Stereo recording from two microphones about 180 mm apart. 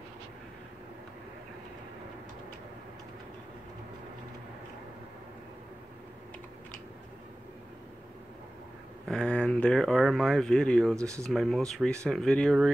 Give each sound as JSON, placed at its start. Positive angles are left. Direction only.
{"t": 9.0, "sound": "speech", "side_deg": 5}
{"t": 11.0, "sound": "speech", "side_deg": -15}
{"t": 11.2, "sound": "speech", "side_deg": 0}